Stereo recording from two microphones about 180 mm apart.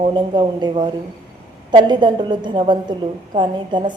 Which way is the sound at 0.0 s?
25° right (ahead or behind).